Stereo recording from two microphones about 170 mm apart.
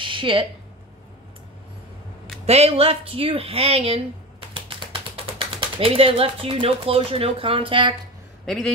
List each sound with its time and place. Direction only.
0.0 s a sound: 30° right (ahead or behind)
2.4 s speech: 40° right (ahead or behind)
4.6 s typing: 30° right (ahead or behind)
5.8 s speech: 35° right (ahead or behind)
8.5 s a man's voice: centre (ahead or behind)